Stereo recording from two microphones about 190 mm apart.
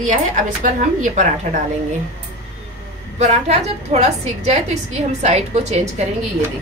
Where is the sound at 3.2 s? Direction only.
35° right (ahead or behind).